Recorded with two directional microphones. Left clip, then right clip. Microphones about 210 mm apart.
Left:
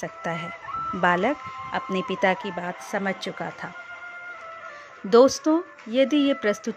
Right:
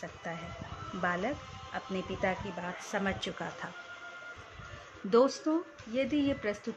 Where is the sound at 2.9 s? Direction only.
25° left (ahead or behind).